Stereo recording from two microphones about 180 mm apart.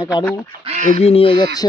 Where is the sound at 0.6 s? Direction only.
40° right (ahead or behind).